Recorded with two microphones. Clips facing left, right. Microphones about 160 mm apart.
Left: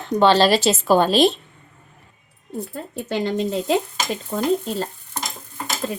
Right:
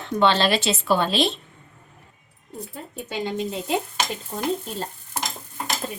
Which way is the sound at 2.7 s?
85° left.